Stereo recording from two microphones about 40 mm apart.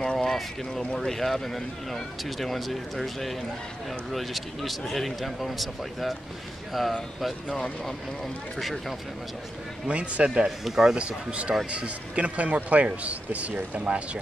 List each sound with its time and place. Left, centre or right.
0.0 s speech: centre
7.4 s speech: centre
8.5 s speech: centre
9.8 s a man's voice: right
10.6 s speech: centre
11.0 s a man's voice: right